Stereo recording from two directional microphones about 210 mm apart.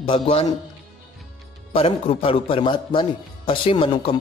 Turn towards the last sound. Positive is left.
turn(degrees=25)  # may be behind; listen again after turning